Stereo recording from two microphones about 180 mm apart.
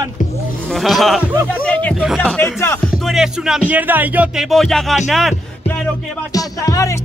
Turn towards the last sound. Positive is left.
turn(degrees=20)  # may be behind; listen again after turning